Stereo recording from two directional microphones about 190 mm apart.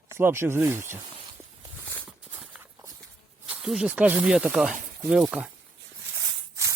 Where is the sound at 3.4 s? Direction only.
5° right (ahead or behind).